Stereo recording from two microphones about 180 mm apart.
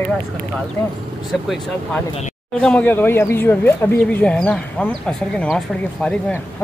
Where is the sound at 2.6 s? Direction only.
10° left (ahead or behind).